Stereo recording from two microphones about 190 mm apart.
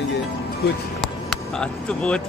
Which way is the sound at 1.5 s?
5° left (ahead or behind).